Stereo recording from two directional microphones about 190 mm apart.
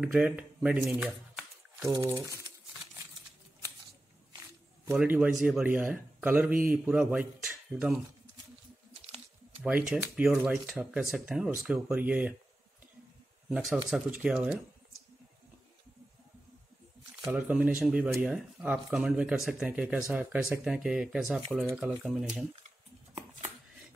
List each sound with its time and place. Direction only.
0.0 s speech: 5° right (ahead or behind)
1.9 s a man's voice: 20° right (ahead or behind)
4.9 s a man's voice: 10° right (ahead or behind)
9.6 s a man's voice: 5° right (ahead or behind)
13.8 s speech: 5° right (ahead or behind)
17.2 s speech: 5° right (ahead or behind)